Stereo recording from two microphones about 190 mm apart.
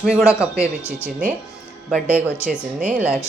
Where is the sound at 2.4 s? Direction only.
5° right (ahead or behind).